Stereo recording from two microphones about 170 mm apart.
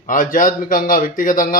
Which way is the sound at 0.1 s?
50° left (ahead or behind).